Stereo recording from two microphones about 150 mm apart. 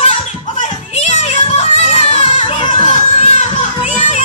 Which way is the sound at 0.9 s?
45° left (ahead or behind).